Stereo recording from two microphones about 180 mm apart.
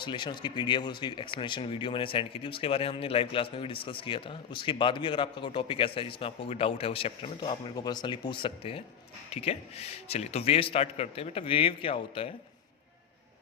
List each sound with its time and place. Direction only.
0.0 s a man's voice: 25° left (ahead or behind)